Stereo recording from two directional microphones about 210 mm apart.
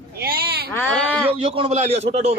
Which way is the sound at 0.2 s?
45° right (ahead or behind).